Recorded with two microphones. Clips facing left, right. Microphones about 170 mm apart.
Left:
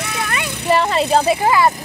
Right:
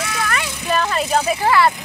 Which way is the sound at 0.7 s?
25° left (ahead or behind).